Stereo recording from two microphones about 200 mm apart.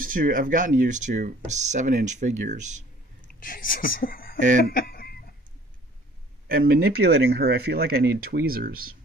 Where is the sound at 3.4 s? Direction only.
45° left (ahead or behind).